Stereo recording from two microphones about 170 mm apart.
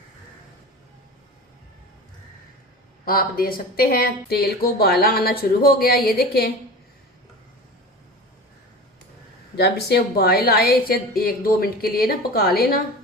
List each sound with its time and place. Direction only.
3.0 s speech: 60° left (ahead or behind)
9.6 s speech: 70° left (ahead or behind)